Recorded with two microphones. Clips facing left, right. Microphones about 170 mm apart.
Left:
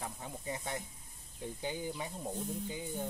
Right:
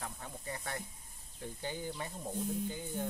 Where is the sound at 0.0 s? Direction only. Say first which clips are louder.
Left 2 dB; 15° left (ahead or behind).